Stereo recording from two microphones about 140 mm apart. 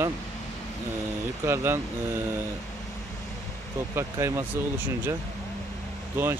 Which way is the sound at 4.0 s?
20° right (ahead or behind).